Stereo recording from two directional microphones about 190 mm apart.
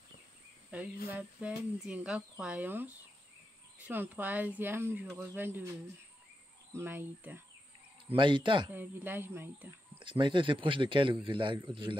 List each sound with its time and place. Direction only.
0.7 s speech: 5° right (ahead or behind)
6.7 s speech: 10° right (ahead or behind)
8.1 s a man's voice: 25° right (ahead or behind)
8.6 s speech: 10° right (ahead or behind)
9.9 s a man's voice: 25° right (ahead or behind)